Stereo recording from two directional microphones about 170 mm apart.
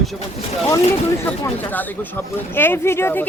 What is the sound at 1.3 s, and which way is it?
Speech, 10° left (ahead or behind).